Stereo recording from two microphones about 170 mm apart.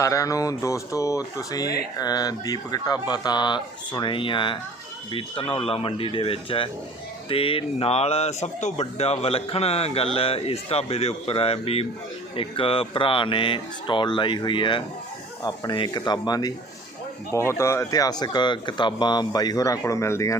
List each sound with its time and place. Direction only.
0.0 s speech: 20° left (ahead or behind)
17.6 s speech: 15° left (ahead or behind)